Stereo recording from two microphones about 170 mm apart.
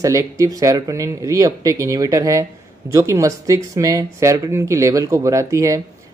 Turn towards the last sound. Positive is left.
turn(degrees=-20)  # may be behind; listen again after turning